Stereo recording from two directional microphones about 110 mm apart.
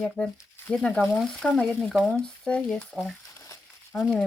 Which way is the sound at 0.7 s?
5° left (ahead or behind).